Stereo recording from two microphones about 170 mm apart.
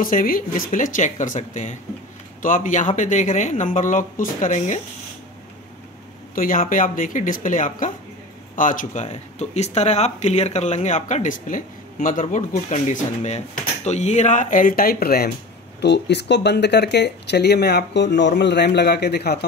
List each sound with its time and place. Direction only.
0.0 s speech: 55° left (ahead or behind)
6.3 s speech: 55° left (ahead or behind)
15.8 s speech: 85° left; by 19.4 s 70° left (ahead or behind)